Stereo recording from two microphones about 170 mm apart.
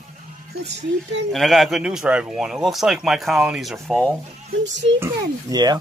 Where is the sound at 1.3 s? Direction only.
Centre (ahead or behind).